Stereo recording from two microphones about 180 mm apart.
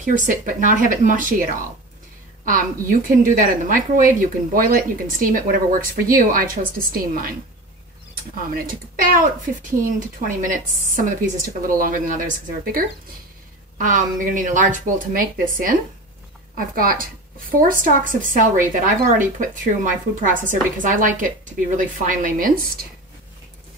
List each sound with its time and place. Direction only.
0.0 s speech: 45° right (ahead or behind)
3.2 s speech: 50° right (ahead or behind)
13.7 s speech: 45° right (ahead or behind)
16.5 s speech: 50° right (ahead or behind)